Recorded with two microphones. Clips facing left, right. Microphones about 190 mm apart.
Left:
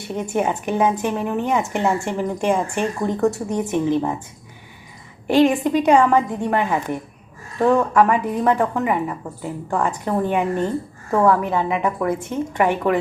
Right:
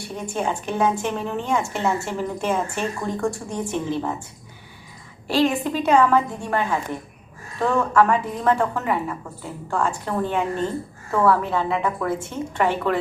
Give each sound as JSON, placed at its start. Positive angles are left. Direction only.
{"t": 0.0, "sound": "a woman's voice", "side_deg": 20}
{"t": 5.3, "sound": "a woman's voice", "side_deg": 15}